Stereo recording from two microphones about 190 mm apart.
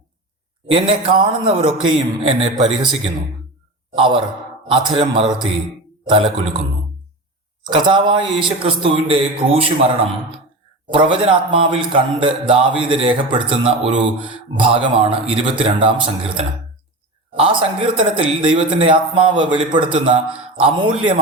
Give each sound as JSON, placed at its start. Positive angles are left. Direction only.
{"t": 0.7, "sound": "speech", "side_deg": -30}
{"t": 7.7, "sound": "speech", "side_deg": -25}
{"t": 17.3, "sound": "speech", "side_deg": -30}